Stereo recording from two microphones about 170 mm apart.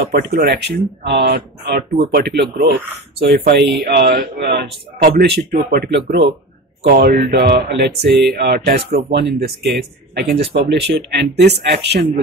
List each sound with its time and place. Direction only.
0.0 s speech: 60° right (ahead or behind); by 12.1 s 80° right